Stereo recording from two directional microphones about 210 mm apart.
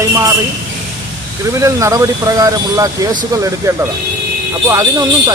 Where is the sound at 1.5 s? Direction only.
15° right (ahead or behind).